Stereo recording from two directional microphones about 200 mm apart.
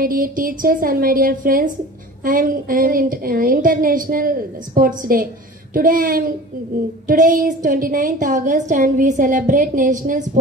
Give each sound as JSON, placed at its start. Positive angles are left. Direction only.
{"t": 0.0, "sound": "a woman's voice", "side_deg": -45}